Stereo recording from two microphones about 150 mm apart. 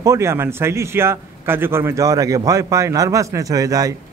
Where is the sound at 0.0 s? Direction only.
20° right (ahead or behind).